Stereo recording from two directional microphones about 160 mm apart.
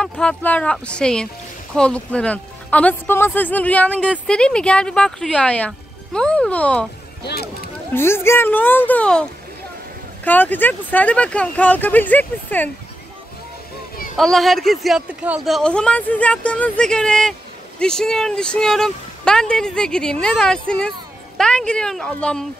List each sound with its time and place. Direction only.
0.0 s speech: 5° left (ahead or behind)
7.2 s speech: 75° left (ahead or behind)
7.9 s speech: 15° left (ahead or behind)
10.2 s speech: 10° left (ahead or behind)
14.1 s speech: centre (ahead or behind)